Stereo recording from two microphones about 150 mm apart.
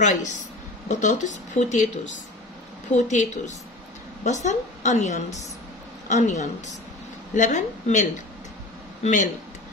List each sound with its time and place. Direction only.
0.0 s a woman's voice: 55° left (ahead or behind)
3.1 s a woman's voice: 55° left (ahead or behind)